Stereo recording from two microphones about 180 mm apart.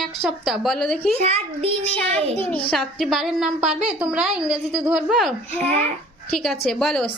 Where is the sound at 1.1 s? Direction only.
35° right (ahead or behind).